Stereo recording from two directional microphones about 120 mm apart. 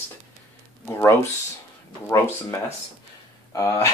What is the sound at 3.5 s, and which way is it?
Speech, 25° left (ahead or behind).